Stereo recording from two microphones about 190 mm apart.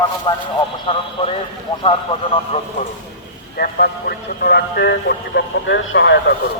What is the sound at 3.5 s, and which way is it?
Speech, 50° left (ahead or behind).